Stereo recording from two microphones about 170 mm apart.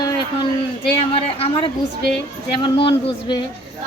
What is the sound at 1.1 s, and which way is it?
A woman's voice, 35° left (ahead or behind).